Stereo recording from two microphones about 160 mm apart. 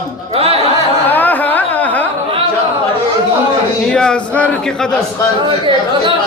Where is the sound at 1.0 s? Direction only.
10° left (ahead or behind).